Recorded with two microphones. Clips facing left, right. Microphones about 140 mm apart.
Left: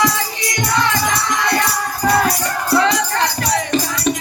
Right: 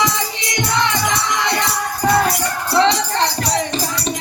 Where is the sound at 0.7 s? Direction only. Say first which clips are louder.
Left 1 dB; 20° right (ahead or behind).